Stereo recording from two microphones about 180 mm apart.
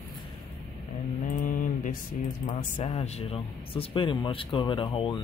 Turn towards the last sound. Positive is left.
turn(degrees=25)  # may be behind; listen again after turning